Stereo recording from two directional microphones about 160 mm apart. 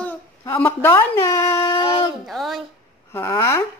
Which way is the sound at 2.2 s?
Centre (ahead or behind).